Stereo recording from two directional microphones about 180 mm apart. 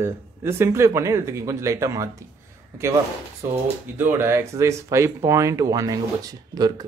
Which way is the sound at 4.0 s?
15° right (ahead or behind).